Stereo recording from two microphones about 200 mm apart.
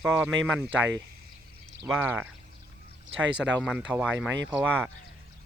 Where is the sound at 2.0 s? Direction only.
10° right (ahead or behind).